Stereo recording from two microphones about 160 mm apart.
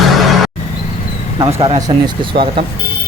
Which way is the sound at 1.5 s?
40° right (ahead or behind).